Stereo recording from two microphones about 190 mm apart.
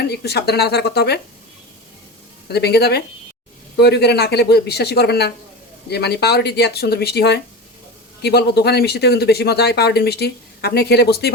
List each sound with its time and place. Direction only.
0.0 s speech: 60° left (ahead or behind)
2.5 s speech: 60° left (ahead or behind)